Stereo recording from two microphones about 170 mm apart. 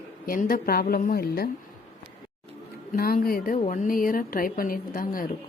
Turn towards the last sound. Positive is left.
turn(degrees=55)  # may be behind; listen again after turning